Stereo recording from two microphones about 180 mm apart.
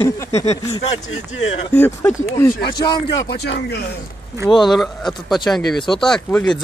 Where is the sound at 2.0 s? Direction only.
15° left (ahead or behind).